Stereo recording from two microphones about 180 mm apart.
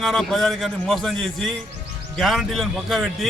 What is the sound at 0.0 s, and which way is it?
A man's voice, centre (ahead or behind).